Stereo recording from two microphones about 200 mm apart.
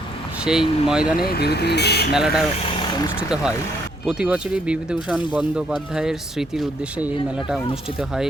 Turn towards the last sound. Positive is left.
turn(degrees=-5)  # may be behind; listen again after turning